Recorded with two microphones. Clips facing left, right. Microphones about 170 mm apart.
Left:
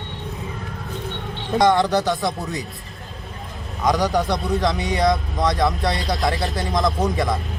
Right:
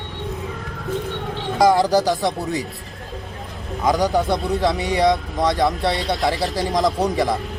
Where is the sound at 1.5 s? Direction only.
5° right (ahead or behind).